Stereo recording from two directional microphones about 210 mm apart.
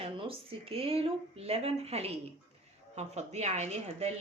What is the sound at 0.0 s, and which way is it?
A woman's voice, 25° right (ahead or behind).